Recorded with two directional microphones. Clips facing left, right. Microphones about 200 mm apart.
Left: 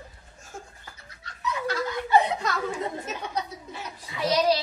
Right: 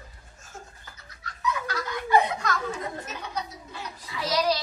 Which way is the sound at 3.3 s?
25° left (ahead or behind).